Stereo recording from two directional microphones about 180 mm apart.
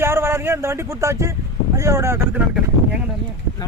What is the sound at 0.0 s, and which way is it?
Speech, 15° right (ahead or behind).